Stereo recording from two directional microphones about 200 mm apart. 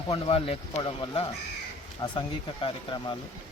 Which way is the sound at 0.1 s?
30° left (ahead or behind).